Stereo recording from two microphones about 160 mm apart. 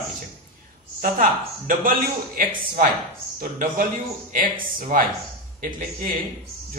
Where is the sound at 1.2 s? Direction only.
60° right (ahead or behind).